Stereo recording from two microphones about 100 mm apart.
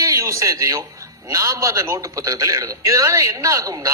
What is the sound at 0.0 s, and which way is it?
A man's voice, 30° right (ahead or behind).